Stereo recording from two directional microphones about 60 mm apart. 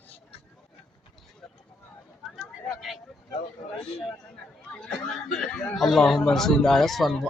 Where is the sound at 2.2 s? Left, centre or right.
Centre.